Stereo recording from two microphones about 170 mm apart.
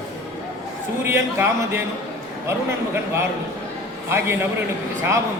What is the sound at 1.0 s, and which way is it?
Speech, 15° right (ahead or behind).